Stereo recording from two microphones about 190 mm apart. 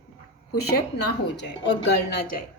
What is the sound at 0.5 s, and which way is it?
A woman's voice, 60° left (ahead or behind).